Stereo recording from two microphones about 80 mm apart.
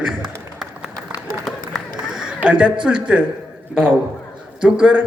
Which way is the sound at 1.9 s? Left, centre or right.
Centre.